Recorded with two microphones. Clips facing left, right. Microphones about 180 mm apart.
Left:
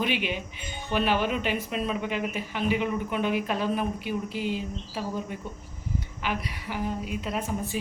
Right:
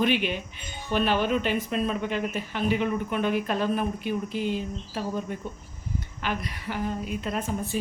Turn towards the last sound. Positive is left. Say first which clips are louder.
# right 1 dB
turn(degrees=10)  # may be behind; listen again after turning